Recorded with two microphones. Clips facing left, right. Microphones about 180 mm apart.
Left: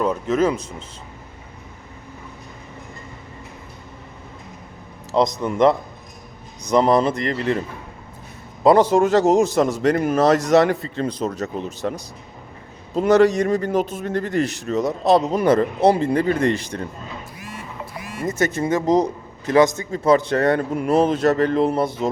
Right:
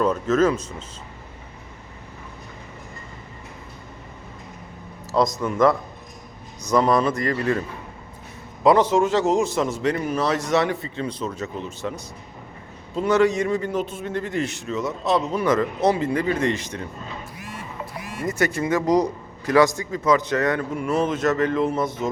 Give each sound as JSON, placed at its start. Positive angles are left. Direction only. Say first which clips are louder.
{"t": 0.0, "sound": "speech", "louder": "even", "side_deg": 10}
{"t": 5.4, "sound": "speech", "louder": "left 2 dB", "side_deg": 20}
{"t": 8.6, "sound": "a man's voice", "louder": "left 3 dB", "side_deg": 35}
{"t": 18.3, "sound": "a man's voice", "louder": "left 2 dB", "side_deg": 20}